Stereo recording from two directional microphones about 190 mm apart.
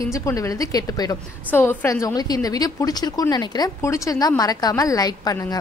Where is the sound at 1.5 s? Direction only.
10° left (ahead or behind).